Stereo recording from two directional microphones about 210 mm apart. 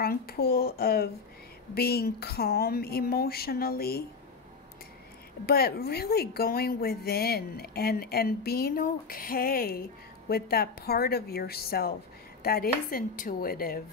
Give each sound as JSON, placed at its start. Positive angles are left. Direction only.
{"t": 0.0, "sound": "a woman's voice", "side_deg": 45}
{"t": 5.5, "sound": "a woman's voice", "side_deg": 45}